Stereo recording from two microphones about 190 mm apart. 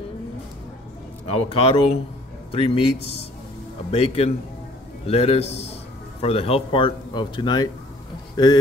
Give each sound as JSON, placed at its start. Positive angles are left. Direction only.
{"t": 1.2, "sound": "a man's voice", "side_deg": 35}
{"t": 3.9, "sound": "a man's voice", "side_deg": 30}